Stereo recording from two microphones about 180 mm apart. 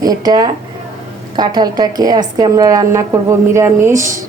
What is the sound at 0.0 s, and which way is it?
A woman's voice, 20° right (ahead or behind).